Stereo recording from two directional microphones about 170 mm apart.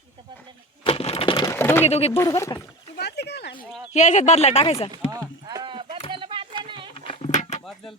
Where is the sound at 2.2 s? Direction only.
15° left (ahead or behind).